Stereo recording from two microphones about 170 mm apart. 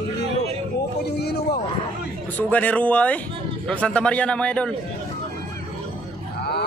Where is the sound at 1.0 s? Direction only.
70° left (ahead or behind).